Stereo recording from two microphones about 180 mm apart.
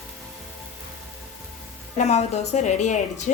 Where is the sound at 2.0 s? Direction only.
40° left (ahead or behind).